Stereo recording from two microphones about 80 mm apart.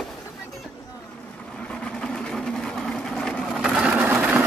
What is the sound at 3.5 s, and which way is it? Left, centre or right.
Wood, centre.